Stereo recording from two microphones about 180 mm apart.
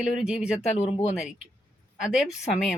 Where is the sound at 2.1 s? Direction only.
5° right (ahead or behind).